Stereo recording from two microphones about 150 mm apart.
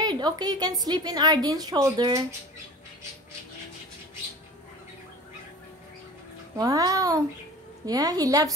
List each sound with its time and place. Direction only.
0.0 s a woman's voice: 30° right (ahead or behind)
6.5 s a woman's voice: 25° right (ahead or behind)